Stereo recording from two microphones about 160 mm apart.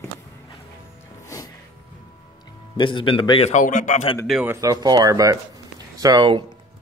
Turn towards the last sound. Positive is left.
turn(degrees=-30)  # may be behind; listen again after turning